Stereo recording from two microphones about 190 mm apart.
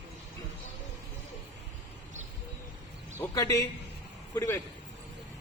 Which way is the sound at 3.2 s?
15° left (ahead or behind).